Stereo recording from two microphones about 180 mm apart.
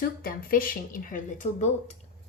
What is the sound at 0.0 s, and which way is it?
Speech, 55° left (ahead or behind).